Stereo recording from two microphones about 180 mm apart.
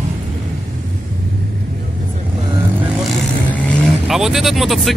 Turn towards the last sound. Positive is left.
turn(degrees=0)  # may be behind; listen again after turning